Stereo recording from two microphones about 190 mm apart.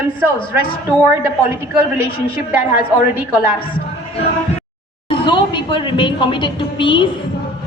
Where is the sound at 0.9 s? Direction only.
10° right (ahead or behind).